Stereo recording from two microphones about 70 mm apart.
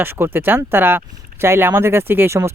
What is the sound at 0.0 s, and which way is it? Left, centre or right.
Speech, right.